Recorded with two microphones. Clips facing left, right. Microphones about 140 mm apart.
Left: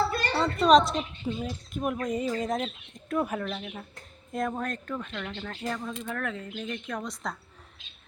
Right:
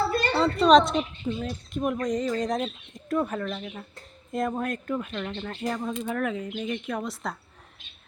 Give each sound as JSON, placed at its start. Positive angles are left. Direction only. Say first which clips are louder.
{"t": 0.3, "sound": "a woman's voice", "louder": "right 2 dB", "side_deg": 0}